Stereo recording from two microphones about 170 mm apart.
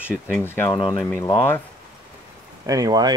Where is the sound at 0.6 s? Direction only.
30° left (ahead or behind).